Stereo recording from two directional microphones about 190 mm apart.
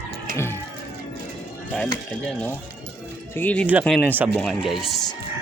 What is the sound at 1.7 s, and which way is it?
Speech, 5° left (ahead or behind).